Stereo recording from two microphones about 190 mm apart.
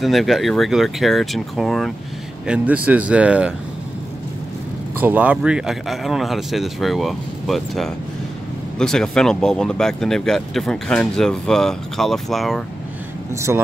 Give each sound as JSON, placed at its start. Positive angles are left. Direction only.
{"t": 0.0, "sound": "speech", "side_deg": 0}
{"t": 5.0, "sound": "speech", "side_deg": -10}
{"t": 13.3, "sound": "speech", "side_deg": -15}